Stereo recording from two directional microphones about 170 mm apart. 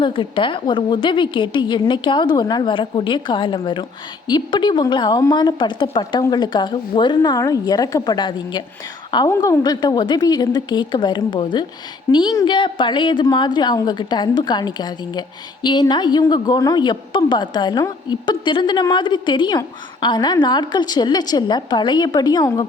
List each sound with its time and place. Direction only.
0.0 s a woman's voice: 30° left (ahead or behind)